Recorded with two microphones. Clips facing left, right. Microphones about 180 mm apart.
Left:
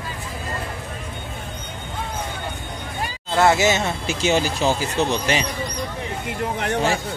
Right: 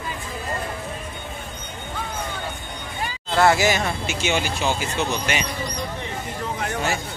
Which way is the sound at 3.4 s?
20° left (ahead or behind).